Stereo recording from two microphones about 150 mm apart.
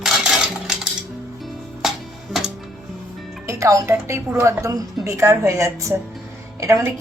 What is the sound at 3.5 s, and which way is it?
A woman's voice, 20° right (ahead or behind).